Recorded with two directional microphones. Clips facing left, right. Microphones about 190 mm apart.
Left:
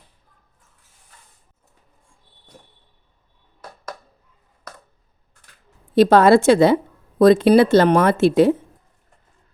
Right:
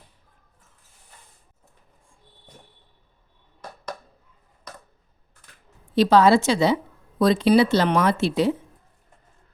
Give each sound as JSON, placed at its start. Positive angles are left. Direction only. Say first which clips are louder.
{"t": 5.9, "sound": "speech", "louder": "left 4 dB", "side_deg": 50}